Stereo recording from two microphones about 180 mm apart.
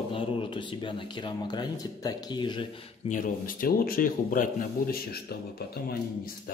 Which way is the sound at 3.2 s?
50° left (ahead or behind).